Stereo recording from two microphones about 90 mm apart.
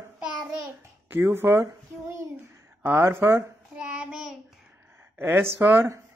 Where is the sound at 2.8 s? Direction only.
25° right (ahead or behind).